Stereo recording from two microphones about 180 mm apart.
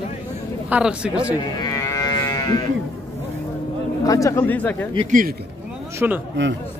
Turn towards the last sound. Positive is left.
turn(degrees=-10)  # may be behind; listen again after turning